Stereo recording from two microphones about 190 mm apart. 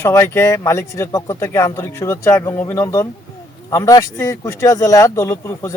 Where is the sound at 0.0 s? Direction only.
15° left (ahead or behind).